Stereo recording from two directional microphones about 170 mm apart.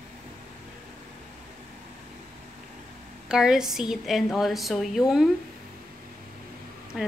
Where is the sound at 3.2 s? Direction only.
5° right (ahead or behind).